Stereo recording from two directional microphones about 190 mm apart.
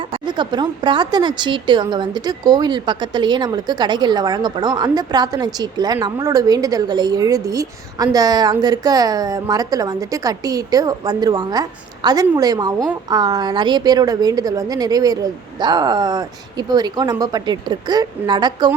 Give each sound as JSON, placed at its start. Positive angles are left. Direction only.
{"t": 0.1, "sound": "speech", "side_deg": -25}